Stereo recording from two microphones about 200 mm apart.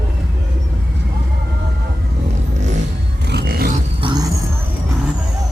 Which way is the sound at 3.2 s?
50° right (ahead or behind).